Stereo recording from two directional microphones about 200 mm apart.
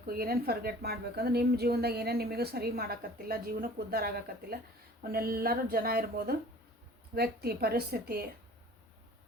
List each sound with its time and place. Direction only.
0.2 s a woman's voice: 50° right (ahead or behind)